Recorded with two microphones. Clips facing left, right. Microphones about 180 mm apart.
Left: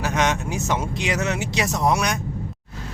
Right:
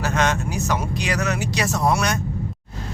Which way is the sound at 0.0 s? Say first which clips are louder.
Right 1 dB; 15° left (ahead or behind).